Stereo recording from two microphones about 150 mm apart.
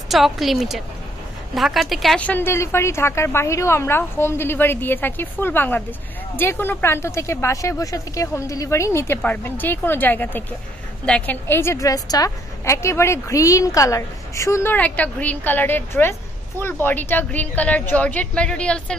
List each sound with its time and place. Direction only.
0.1 s a woman's voice: centre (ahead or behind)